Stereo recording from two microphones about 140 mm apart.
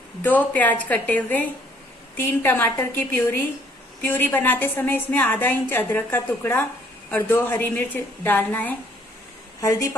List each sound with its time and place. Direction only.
0.2 s a woman's voice: 10° left (ahead or behind)
9.6 s speech: 25° left (ahead or behind)